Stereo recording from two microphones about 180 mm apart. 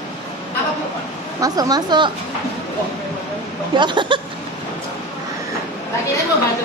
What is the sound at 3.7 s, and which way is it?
Speech, 25° right (ahead or behind).